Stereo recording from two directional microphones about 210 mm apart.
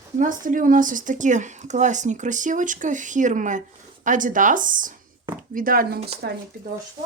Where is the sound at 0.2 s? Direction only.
40° right (ahead or behind).